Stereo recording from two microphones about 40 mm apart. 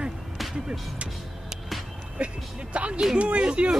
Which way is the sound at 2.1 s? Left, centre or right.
Right.